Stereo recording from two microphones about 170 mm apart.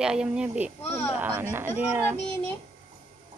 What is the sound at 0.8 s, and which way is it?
Speech, 10° left (ahead or behind).